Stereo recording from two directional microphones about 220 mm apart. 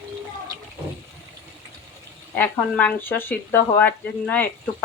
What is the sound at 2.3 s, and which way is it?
Speech, 5° left (ahead or behind).